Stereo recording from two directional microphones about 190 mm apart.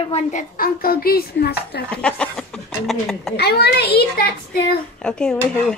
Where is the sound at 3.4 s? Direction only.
55° left (ahead or behind).